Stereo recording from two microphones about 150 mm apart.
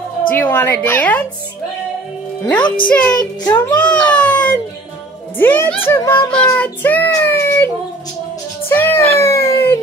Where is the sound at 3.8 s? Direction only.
5° left (ahead or behind).